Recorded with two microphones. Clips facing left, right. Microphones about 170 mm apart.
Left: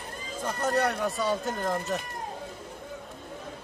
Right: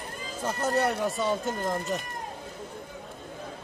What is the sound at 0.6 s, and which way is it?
Speech, 25° right (ahead or behind).